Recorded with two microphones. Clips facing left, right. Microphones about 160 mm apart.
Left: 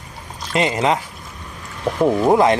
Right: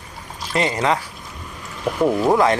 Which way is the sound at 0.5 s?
20° left (ahead or behind).